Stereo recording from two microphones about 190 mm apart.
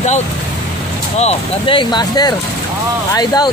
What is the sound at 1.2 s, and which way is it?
Speech, 30° left (ahead or behind).